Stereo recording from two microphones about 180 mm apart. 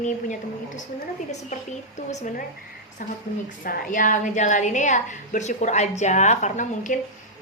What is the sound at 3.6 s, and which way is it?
Speech, 50° left (ahead or behind).